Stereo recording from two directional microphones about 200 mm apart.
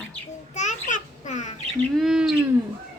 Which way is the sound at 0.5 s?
35° left (ahead or behind).